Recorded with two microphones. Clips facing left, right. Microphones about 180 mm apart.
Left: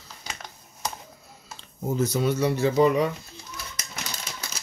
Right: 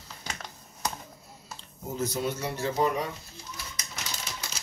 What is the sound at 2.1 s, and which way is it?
Speech, 75° left (ahead or behind).